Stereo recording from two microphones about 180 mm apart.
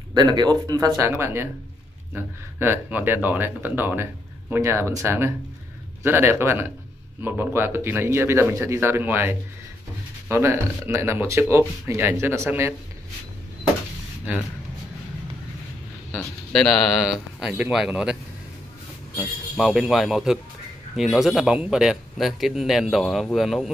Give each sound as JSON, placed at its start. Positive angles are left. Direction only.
{"t": 0.1, "sound": "speech", "side_deg": -25}
{"t": 16.5, "sound": "speech", "side_deg": 0}
{"t": 19.5, "sound": "speech", "side_deg": 0}